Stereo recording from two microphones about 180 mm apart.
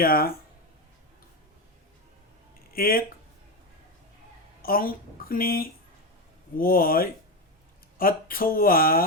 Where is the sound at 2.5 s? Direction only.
55° left (ahead or behind).